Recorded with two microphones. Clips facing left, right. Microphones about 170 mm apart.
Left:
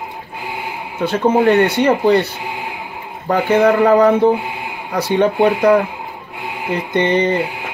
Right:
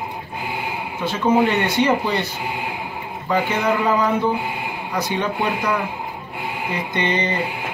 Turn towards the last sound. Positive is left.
turn(degrees=55)  # may be behind; listen again after turning